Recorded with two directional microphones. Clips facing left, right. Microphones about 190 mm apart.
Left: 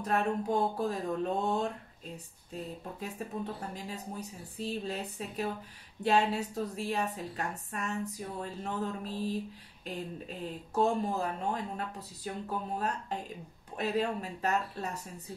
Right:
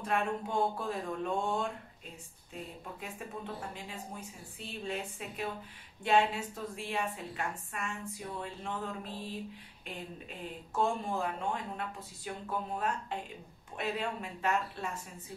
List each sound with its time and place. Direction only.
0.0 s a woman's voice: 40° left (ahead or behind)
3.2 s a woman's voice: 40° left (ahead or behind)